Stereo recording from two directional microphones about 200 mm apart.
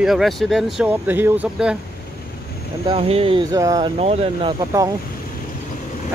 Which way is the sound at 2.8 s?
30° right (ahead or behind).